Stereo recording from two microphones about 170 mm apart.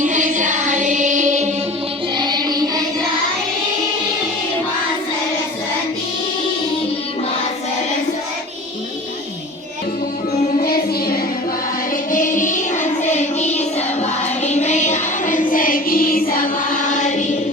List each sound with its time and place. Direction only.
0.0 s music: 50° right (ahead or behind)
2.1 s music: 25° right (ahead or behind)
10.6 s music: 65° left (ahead or behind)
12.1 s child singing: 50° left (ahead or behind)